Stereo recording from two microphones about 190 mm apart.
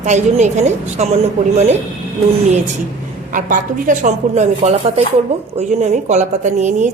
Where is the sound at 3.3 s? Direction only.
45° right (ahead or behind).